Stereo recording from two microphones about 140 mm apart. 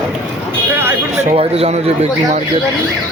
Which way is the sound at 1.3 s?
45° right (ahead or behind).